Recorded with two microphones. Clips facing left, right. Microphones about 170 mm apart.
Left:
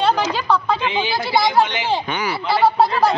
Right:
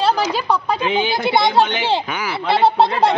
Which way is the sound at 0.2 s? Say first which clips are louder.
Even; 10° right (ahead or behind).